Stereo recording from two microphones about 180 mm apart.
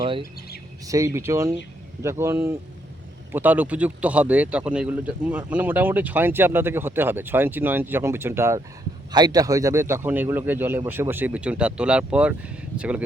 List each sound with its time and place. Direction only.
0.9 s a man's voice: 15° right (ahead or behind)